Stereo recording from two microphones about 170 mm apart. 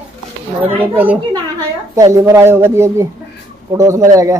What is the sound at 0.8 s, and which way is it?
Speech, 10° right (ahead or behind).